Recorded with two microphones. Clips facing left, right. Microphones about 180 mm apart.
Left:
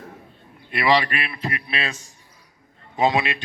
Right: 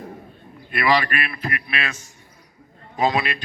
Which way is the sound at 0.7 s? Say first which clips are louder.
Even; 25° left (ahead or behind).